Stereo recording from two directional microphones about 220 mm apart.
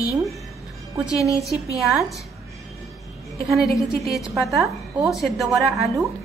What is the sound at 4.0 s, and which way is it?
A woman's voice, centre (ahead or behind).